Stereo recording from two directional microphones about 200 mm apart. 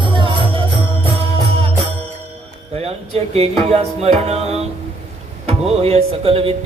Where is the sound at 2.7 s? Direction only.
30° right (ahead or behind).